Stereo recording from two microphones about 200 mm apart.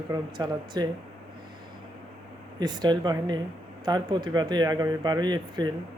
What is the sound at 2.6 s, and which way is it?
Speech, 20° right (ahead or behind).